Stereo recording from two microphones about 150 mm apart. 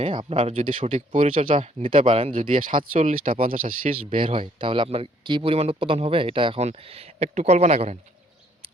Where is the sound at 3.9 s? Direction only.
40° right (ahead or behind).